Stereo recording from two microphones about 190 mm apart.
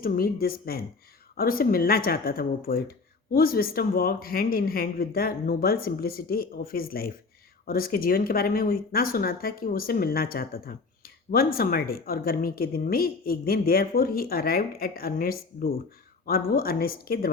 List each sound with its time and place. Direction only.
0.0 s speech: 50° left (ahead or behind)